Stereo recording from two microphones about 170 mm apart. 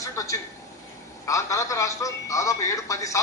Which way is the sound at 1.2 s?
15° left (ahead or behind).